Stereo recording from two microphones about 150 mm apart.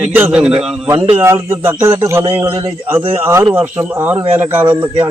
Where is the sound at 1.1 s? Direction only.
15° right (ahead or behind).